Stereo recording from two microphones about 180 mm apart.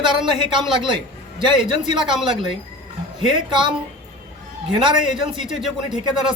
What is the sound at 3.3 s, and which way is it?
Speech, 25° right (ahead or behind).